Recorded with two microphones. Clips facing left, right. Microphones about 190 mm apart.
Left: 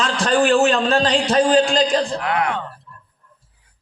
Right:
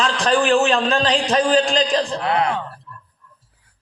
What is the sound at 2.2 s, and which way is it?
Speech, 30° right (ahead or behind).